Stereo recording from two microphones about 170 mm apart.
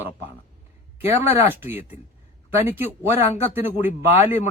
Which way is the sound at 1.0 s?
15° right (ahead or behind).